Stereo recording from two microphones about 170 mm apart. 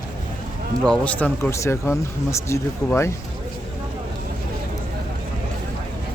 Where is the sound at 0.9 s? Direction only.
10° left (ahead or behind).